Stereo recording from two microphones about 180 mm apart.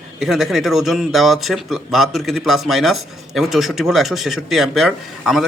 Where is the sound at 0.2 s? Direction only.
Centre (ahead or behind).